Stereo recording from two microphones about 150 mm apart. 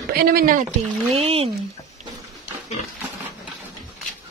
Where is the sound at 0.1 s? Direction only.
85° right.